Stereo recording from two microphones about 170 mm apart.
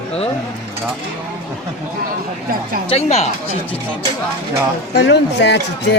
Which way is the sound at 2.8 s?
40° left (ahead or behind).